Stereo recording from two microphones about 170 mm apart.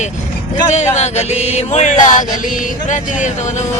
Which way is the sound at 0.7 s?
40° left (ahead or behind).